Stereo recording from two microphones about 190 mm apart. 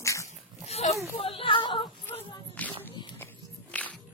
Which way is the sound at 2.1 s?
10° left (ahead or behind).